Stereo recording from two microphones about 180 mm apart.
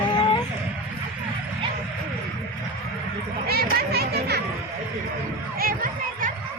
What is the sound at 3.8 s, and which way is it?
Music, 60° right (ahead or behind).